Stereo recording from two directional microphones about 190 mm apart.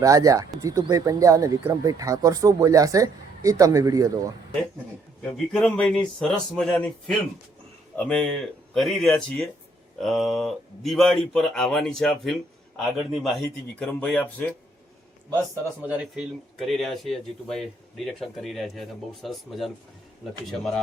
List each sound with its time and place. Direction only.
0.0 s speech: 20° right (ahead or behind)
5.2 s speech: 5° left (ahead or behind)
15.8 s speech: 5° right (ahead or behind)